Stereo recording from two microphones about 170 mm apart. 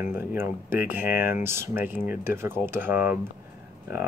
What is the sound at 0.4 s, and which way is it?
Speech, 15° right (ahead or behind).